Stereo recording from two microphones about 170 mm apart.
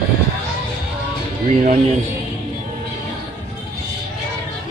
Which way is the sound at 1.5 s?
45° right (ahead or behind).